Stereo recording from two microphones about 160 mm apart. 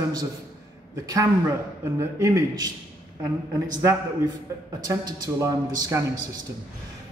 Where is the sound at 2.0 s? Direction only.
20° right (ahead or behind).